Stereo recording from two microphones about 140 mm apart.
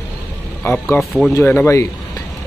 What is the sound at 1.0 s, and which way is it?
Speech, centre (ahead or behind).